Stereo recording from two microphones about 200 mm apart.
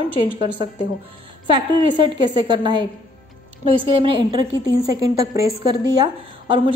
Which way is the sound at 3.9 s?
25° right (ahead or behind).